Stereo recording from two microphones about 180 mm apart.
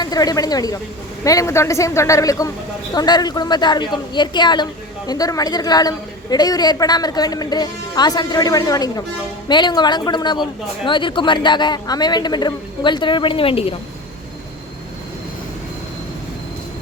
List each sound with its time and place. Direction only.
0.0 s a woman's voice: 20° left (ahead or behind)